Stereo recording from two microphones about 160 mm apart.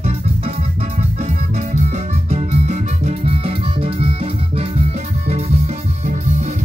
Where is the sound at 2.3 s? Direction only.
45° right (ahead or behind).